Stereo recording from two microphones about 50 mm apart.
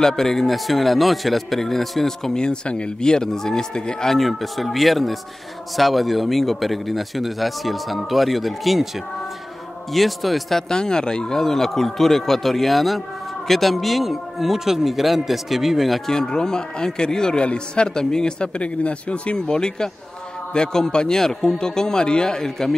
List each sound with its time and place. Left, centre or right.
0.0 s speech: centre
4.1 s a man's voice: centre
10.7 s a man's voice: centre
16.1 s speech: centre